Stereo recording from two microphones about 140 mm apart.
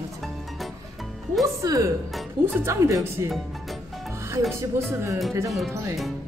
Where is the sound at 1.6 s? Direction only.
25° right (ahead or behind).